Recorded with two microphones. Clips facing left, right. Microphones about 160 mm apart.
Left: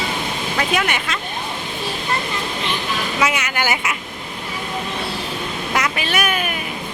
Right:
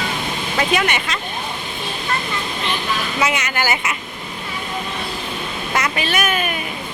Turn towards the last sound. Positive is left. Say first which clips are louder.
# right 1 dB
turn(degrees=10)  # may be behind; listen again after turning